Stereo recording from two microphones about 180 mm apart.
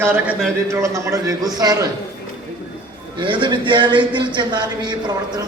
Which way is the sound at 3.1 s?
25° right (ahead or behind).